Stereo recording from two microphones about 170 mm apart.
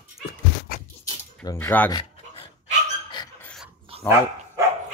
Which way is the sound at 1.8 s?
25° left (ahead or behind).